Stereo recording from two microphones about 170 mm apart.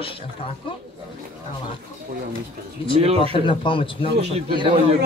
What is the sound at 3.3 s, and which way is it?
Speech, 30° left (ahead or behind).